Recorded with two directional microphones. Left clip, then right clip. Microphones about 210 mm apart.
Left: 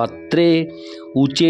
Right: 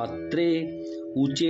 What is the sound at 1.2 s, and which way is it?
Mantra, 55° left (ahead or behind).